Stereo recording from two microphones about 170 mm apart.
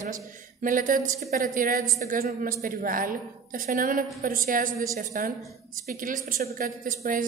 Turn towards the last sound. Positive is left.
turn(degrees=-55)  # may be behind; listen again after turning